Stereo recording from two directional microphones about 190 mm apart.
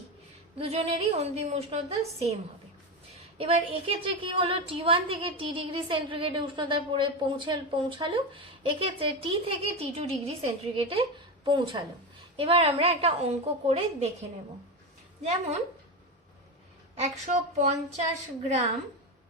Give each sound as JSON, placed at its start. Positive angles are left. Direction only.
{"t": 0.6, "sound": "a woman's voice", "side_deg": -30}
{"t": 3.3, "sound": "a woman's voice", "side_deg": -30}
{"t": 17.0, "sound": "a woman's voice", "side_deg": -40}